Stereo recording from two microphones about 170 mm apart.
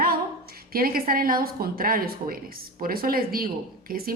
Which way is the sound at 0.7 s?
60° right (ahead or behind).